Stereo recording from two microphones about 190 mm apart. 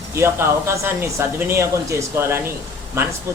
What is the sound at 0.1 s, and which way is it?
A man's voice, 15° right (ahead or behind).